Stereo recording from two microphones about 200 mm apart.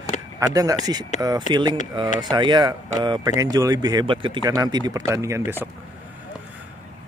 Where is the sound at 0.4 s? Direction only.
15° right (ahead or behind).